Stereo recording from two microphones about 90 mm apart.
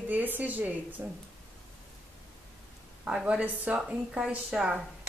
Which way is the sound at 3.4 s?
20° right (ahead or behind).